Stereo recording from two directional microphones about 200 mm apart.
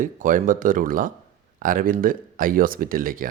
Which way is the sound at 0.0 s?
40° right (ahead or behind).